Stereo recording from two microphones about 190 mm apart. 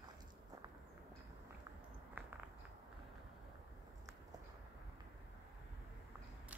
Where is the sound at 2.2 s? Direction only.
10° right (ahead or behind).